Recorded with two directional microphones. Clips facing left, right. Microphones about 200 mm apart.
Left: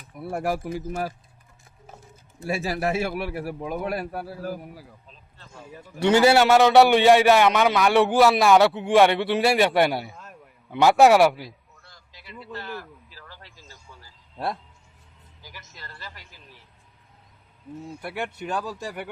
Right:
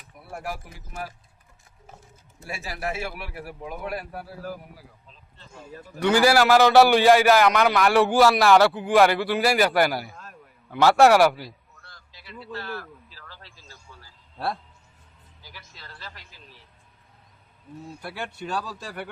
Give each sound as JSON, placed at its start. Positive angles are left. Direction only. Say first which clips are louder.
{"t": 0.3, "sound": "speech", "louder": "left 8 dB", "side_deg": 40}
{"t": 2.4, "sound": "a man's voice", "louder": "left 7 dB", "side_deg": 30}
{"t": 6.0, "sound": "a man's voice", "louder": "left 2 dB", "side_deg": 25}
{"t": 6.4, "sound": "speech", "louder": "left 1 dB", "side_deg": 0}
{"t": 10.2, "sound": "a sound", "louder": "left 1 dB", "side_deg": 15}
{"t": 11.0, "sound": "speech", "louder": "left 1 dB", "side_deg": 0}
{"t": 12.5, "sound": "a sound", "louder": "right 1 dB", "side_deg": 20}
{"t": 15.4, "sound": "music", "louder": "left 2 dB", "side_deg": 15}
{"t": 15.8, "sound": "speech", "louder": "left 1 dB", "side_deg": 10}
{"t": 18.0, "sound": "speech", "louder": "left 3 dB", "side_deg": 15}